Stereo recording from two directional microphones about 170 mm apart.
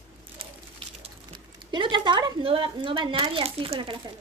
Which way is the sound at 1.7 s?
30° right (ahead or behind).